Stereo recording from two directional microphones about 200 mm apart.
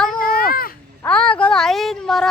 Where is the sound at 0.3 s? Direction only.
45° left (ahead or behind).